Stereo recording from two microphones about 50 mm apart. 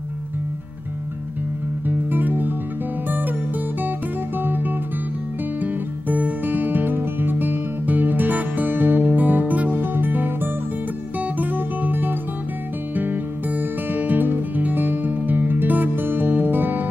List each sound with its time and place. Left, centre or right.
1.9 s music: right
4.4 s music: right